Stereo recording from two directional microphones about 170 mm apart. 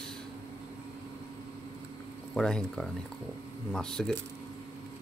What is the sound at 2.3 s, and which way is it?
A man's voice, 5° left (ahead or behind).